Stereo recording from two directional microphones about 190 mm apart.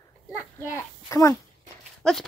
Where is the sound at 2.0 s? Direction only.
5° left (ahead or behind).